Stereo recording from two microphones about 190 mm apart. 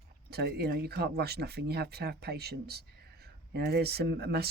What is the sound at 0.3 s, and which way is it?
Speech, 55° right (ahead or behind).